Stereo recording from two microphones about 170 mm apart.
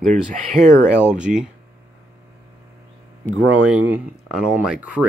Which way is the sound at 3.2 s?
15° right (ahead or behind).